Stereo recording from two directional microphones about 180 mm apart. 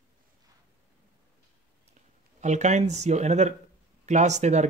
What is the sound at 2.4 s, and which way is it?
Speech, 40° right (ahead or behind).